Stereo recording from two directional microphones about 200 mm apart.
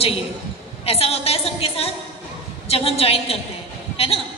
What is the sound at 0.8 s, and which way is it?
A man's voice, 30° left (ahead or behind).